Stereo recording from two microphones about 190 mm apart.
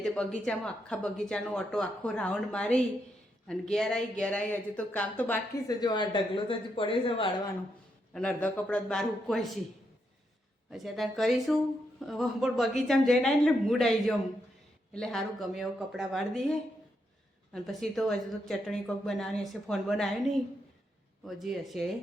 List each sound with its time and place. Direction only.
0.0 s speech: 5° left (ahead or behind)
5.6 s a woman's voice: 20° left (ahead or behind)
8.1 s speech: 5° left (ahead or behind)
10.7 s speech: centre (ahead or behind)
21.2 s speech: centre (ahead or behind)